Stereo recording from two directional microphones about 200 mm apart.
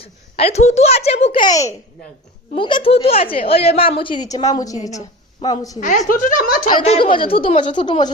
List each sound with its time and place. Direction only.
0.0 s a woman's voice: 30° left (ahead or behind)
5.8 s a woman's voice: 40° left (ahead or behind)
6.9 s a woman's voice: 25° left (ahead or behind)